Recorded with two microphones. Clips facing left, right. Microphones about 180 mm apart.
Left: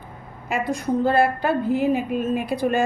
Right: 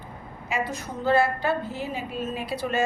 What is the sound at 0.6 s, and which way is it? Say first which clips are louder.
Speech: left 5 dB; 5° right (ahead or behind).